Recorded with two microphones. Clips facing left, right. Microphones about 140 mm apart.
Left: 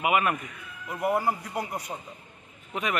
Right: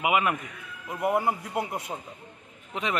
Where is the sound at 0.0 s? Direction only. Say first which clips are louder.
Even; 15° right (ahead or behind).